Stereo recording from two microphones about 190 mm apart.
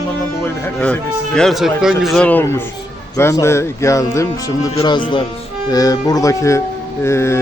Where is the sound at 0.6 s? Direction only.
5° left (ahead or behind).